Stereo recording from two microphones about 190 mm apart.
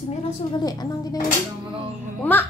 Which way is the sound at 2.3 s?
10° left (ahead or behind).